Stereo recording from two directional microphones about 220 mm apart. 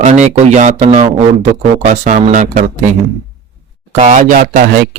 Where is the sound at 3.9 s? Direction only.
35° right (ahead or behind).